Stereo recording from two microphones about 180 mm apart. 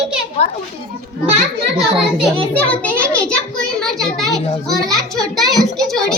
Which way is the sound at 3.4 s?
5° left (ahead or behind).